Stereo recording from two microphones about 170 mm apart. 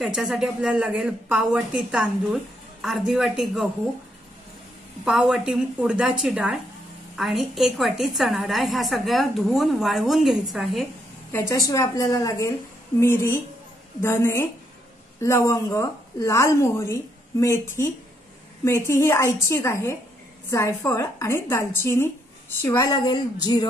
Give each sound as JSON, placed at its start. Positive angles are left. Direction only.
{"t": 0.0, "sound": "a woman's voice", "side_deg": -5}
{"t": 5.0, "sound": "a woman's voice", "side_deg": -5}
{"t": 11.3, "sound": "a woman's voice", "side_deg": 15}